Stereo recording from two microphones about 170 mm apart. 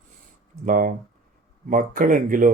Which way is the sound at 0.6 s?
50° right (ahead or behind).